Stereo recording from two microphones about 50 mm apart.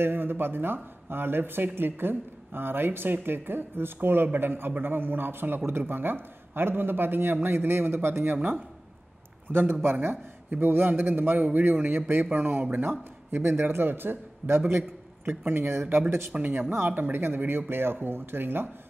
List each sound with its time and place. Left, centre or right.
0.0 s speech: right
8.4 s a man's voice: right
9.5 s a man's voice: right
16.3 s a man's voice: right